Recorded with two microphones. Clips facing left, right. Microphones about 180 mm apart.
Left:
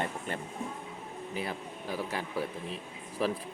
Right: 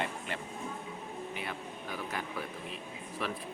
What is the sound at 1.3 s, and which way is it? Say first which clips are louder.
A man's voice: left 3 dB; 35° left (ahead or behind).